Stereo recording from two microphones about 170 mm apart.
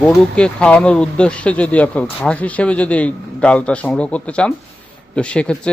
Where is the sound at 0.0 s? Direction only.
5° left (ahead or behind).